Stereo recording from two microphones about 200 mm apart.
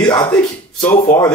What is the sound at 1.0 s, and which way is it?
Speech, 25° left (ahead or behind).